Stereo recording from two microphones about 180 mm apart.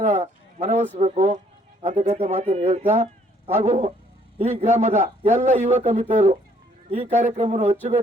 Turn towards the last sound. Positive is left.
turn(degrees=-40)  # may be behind; listen again after turning